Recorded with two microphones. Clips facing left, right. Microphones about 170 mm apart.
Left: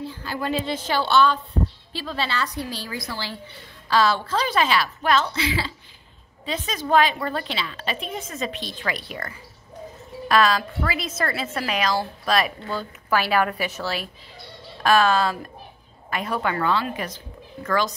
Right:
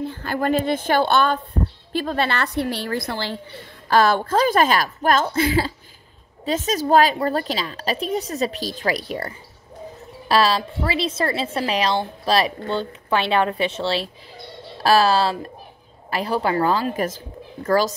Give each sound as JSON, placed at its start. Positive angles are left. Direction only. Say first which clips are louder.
{"t": 0.0, "sound": "a woman's voice", "louder": "right 5 dB", "side_deg": -55}